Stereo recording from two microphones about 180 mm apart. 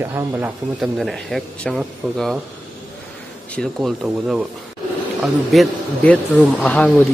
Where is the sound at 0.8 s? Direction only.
Centre (ahead or behind).